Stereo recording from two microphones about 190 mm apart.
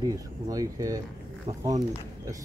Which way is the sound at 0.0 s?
20° right (ahead or behind).